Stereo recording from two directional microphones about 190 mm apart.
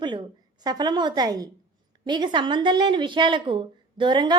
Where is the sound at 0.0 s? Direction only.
25° right (ahead or behind).